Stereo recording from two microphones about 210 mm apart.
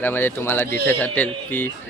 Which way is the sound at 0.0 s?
10° left (ahead or behind).